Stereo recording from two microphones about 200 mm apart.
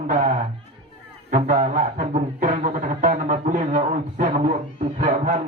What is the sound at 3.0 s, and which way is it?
A man's voice, 40° right (ahead or behind).